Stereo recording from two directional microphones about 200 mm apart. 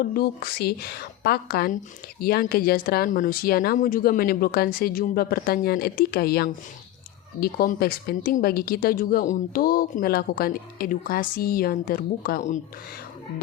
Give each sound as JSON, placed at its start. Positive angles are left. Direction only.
{"t": 0.0, "sound": "speech", "side_deg": 50}